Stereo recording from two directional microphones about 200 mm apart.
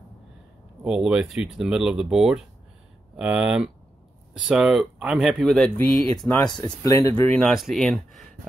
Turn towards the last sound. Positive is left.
turn(degrees=0)  # may be behind; listen again after turning